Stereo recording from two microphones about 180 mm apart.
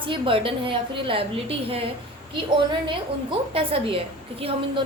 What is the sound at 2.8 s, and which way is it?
A woman's voice, 30° right (ahead or behind).